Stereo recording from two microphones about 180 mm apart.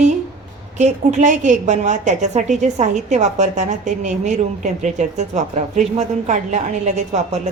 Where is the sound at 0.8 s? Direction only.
40° right (ahead or behind).